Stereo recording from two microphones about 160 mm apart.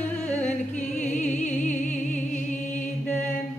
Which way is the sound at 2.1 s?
10° left (ahead or behind).